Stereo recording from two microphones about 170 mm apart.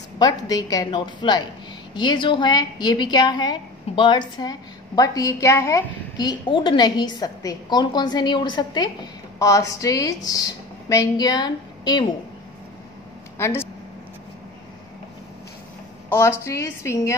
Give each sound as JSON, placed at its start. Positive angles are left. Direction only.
{"t": 0.2, "sound": "a woman's voice", "side_deg": 20}
{"t": 13.4, "sound": "speech", "side_deg": 15}
{"t": 16.1, "sound": "a woman's voice", "side_deg": 15}